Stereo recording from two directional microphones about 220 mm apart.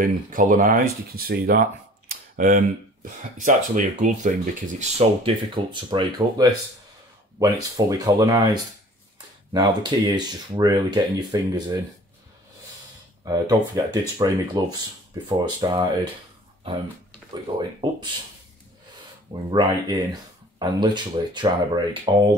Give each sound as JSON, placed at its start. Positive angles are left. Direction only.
{"t": 0.0, "sound": "speech", "side_deg": -40}
{"t": 13.2, "sound": "speech", "side_deg": -15}
{"t": 17.3, "sound": "speech", "side_deg": -20}
{"t": 19.5, "sound": "speech", "side_deg": -20}